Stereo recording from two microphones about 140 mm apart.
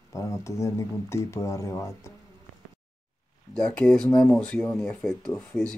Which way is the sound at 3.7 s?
5° left (ahead or behind).